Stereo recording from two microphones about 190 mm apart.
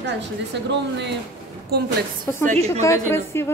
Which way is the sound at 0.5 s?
65° right (ahead or behind).